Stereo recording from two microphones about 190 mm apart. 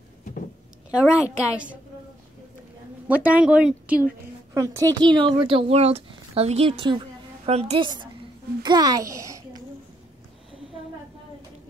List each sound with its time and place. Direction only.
0.9 s speech: 5° right (ahead or behind)
3.1 s speech: 5° right (ahead or behind)
4.6 s speech: 15° right (ahead or behind)